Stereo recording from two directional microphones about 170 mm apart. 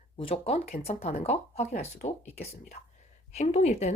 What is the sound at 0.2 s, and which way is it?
Speech, 35° left (ahead or behind).